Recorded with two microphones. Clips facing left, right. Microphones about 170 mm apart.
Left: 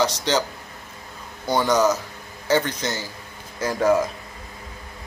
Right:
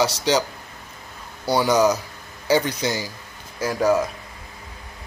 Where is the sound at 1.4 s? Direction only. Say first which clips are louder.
Right 1 dB; 10° right (ahead or behind).